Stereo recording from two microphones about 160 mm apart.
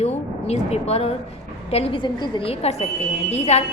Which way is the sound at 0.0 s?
45° left (ahead or behind).